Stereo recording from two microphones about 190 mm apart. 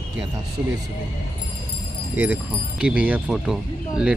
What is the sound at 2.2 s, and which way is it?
Speech, 10° right (ahead or behind).